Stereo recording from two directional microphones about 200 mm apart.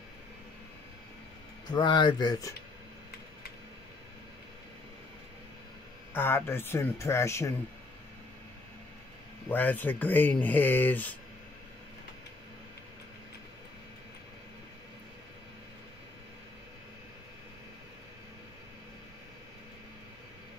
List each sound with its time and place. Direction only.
1.7 s speech: 20° left (ahead or behind)
6.1 s speech: 10° left (ahead or behind)
9.5 s speech: 10° left (ahead or behind)